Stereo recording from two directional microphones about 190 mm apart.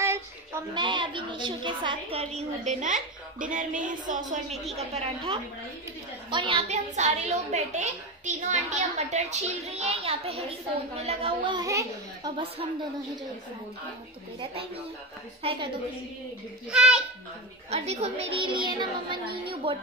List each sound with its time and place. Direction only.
0.7 s a woman's voice: 25° right (ahead or behind)
15.4 s a woman's voice: 30° right (ahead or behind)
16.7 s a child's voice: 5° right (ahead or behind)
17.6 s a woman's voice: 35° right (ahead or behind)